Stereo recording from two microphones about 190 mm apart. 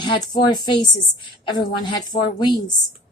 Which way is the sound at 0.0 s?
20° left (ahead or behind).